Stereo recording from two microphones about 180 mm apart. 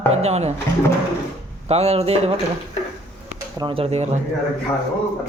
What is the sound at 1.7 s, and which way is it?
Speech, 35° right (ahead or behind).